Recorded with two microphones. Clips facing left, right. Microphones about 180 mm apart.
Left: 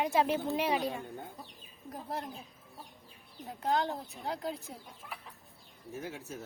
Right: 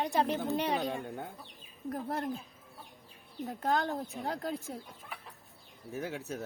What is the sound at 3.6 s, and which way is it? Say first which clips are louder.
Speech: even; 50° right (ahead or behind).